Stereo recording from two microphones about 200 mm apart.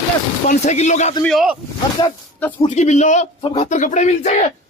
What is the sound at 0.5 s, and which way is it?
Speech, 35° left (ahead or behind).